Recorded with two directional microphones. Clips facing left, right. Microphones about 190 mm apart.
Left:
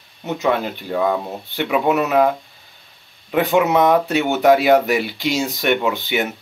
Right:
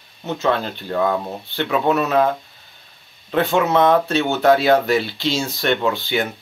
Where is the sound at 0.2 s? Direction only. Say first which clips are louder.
Left 1 dB; 15° left (ahead or behind).